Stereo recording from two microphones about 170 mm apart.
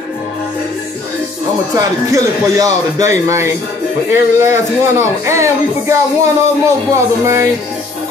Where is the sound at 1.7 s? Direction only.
20° right (ahead or behind).